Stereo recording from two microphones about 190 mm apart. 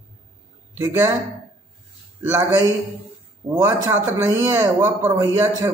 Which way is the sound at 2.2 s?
10° right (ahead or behind).